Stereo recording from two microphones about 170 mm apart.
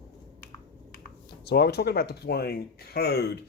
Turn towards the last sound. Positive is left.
turn(degrees=70)  # may be behind; listen again after turning